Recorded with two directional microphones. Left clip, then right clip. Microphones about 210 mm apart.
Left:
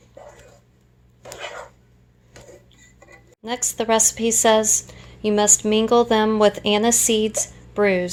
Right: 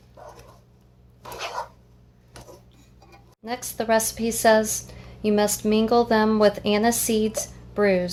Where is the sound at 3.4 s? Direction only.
30° left (ahead or behind).